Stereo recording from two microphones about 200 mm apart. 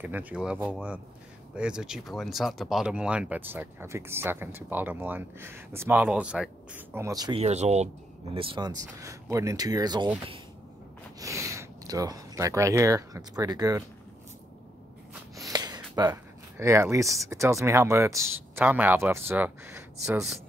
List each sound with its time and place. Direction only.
0.0 s speech: 10° right (ahead or behind)
7.3 s speech: 35° right (ahead or behind)
11.1 s speech: 15° right (ahead or behind)
15.3 s speech: 20° right (ahead or behind)